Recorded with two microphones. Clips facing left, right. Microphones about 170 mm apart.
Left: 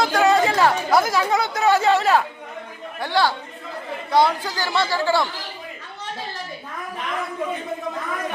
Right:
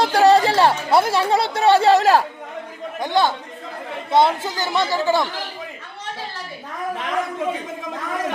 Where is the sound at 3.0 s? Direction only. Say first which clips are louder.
Right 2 dB; 20° right (ahead or behind).